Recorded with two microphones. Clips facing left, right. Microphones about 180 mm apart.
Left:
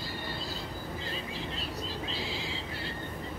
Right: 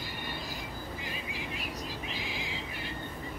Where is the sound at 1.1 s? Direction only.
15° right (ahead or behind).